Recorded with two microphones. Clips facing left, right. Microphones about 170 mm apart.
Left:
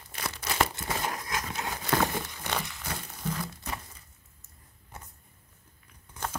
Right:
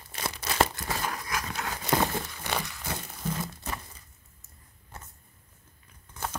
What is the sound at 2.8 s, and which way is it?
Crumpling, 25° right (ahead or behind).